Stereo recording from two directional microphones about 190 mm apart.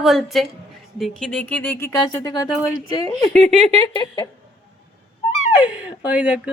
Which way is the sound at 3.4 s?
35° right (ahead or behind).